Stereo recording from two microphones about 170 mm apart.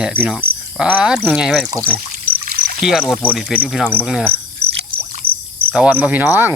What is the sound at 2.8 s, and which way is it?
Speech, centre (ahead or behind).